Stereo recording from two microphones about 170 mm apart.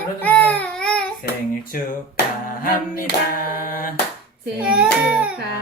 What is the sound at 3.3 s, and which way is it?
Mantra, 55° left (ahead or behind).